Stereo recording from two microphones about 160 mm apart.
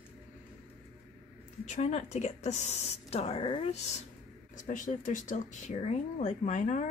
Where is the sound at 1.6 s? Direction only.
45° left (ahead or behind).